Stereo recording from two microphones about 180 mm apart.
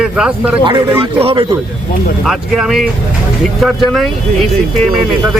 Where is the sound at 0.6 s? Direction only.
25° right (ahead or behind).